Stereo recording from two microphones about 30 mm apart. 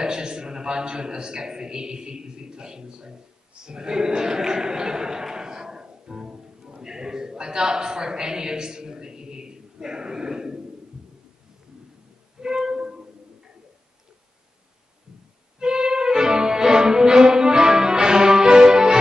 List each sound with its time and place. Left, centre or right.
0.0 s a man's voice: right
12.4 s music: right
15.6 s music: right